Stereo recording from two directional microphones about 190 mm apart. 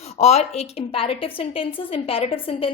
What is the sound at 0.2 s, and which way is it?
A woman's voice, 35° left (ahead or behind).